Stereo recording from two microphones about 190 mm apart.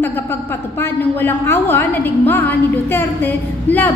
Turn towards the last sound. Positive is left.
turn(degrees=10)  # may be behind; listen again after turning